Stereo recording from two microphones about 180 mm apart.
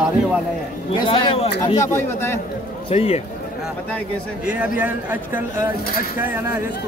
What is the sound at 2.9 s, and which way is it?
Speech, 35° left (ahead or behind).